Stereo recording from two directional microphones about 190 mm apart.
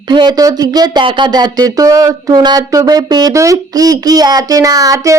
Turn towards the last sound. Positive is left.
turn(degrees=-15)  # may be behind; listen again after turning